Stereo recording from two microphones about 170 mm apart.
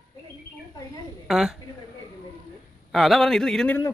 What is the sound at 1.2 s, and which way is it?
Speech, centre (ahead or behind).